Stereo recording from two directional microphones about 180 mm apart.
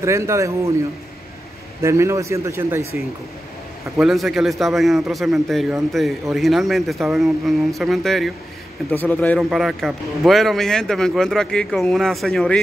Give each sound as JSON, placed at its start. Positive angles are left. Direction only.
{"t": 0.0, "sound": "speech", "side_deg": -15}
{"t": 1.8, "sound": "speech", "side_deg": -15}
{"t": 4.0, "sound": "speech", "side_deg": 0}
{"t": 9.4, "sound": "speech", "side_deg": 0}